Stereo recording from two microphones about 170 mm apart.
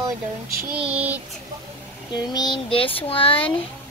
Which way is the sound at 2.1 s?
25° left (ahead or behind).